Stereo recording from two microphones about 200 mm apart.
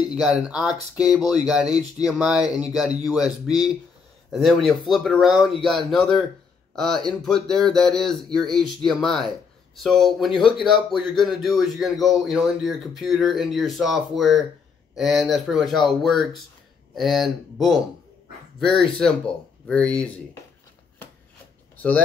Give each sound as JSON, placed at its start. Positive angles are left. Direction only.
{"t": 0.1, "sound": "a man's voice", "side_deg": -5}
{"t": 5.9, "sound": "speech", "side_deg": 25}
{"t": 6.7, "sound": "a man's voice", "side_deg": 5}